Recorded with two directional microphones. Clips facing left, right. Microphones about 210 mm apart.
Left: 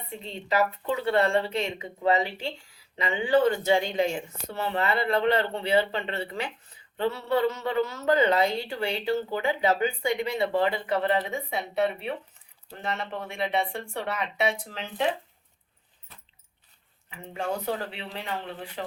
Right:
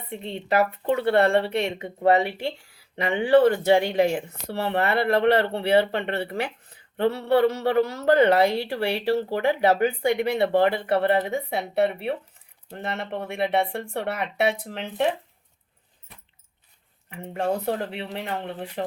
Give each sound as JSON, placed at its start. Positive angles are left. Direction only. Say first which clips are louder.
{"t": 0.1, "sound": "a woman's voice", "louder": "right 4 dB", "side_deg": -60}
{"t": 17.7, "sound": "speech", "louder": "right 4 dB", "side_deg": -55}